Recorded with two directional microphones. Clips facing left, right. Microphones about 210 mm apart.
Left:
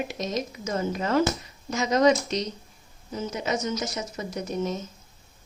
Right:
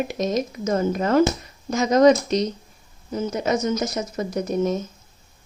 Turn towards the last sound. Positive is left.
turn(degrees=-50)  # may be behind; listen again after turning